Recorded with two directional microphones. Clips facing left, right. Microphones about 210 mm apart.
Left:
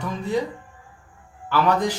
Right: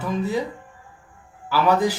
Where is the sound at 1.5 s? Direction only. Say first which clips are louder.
Right 1 dB; 5° right (ahead or behind).